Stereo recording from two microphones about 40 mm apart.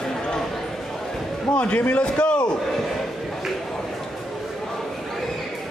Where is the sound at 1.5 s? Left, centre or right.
Left.